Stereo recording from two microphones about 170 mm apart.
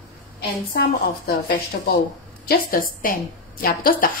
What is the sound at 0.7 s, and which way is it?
A woman's voice, 65° left (ahead or behind).